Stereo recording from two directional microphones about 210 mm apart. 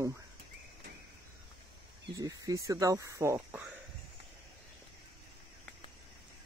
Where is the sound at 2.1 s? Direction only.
15° right (ahead or behind).